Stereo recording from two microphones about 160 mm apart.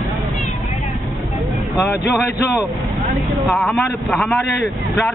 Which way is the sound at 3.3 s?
Centre (ahead or behind).